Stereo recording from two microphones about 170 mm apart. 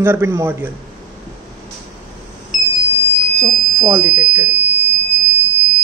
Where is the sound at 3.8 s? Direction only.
10° right (ahead or behind).